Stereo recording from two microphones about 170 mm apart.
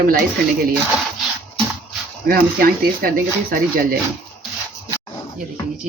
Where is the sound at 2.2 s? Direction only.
60° right (ahead or behind).